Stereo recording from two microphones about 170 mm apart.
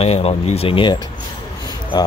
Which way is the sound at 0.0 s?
35° left (ahead or behind).